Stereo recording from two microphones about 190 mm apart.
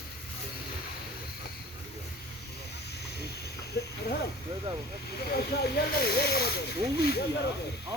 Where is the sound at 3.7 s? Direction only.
60° left (ahead or behind).